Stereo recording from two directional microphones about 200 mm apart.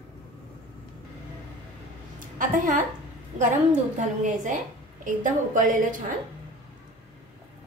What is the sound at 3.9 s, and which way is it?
A woman's voice, 40° right (ahead or behind).